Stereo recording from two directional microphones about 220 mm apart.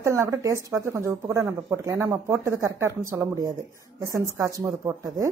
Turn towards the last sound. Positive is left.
turn(degrees=-15)  # may be behind; listen again after turning